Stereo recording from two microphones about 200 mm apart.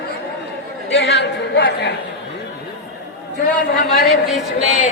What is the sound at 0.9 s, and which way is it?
Speech, 55° left (ahead or behind).